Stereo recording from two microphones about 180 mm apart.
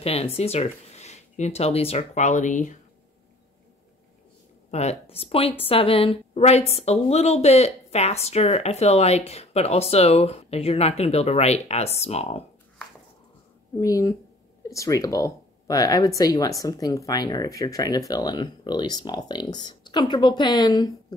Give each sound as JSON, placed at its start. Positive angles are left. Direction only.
{"t": 0.0, "sound": "a woman's voice", "side_deg": 35}
{"t": 4.6, "sound": "a woman's voice", "side_deg": 35}
{"t": 13.7, "sound": "speech", "side_deg": 20}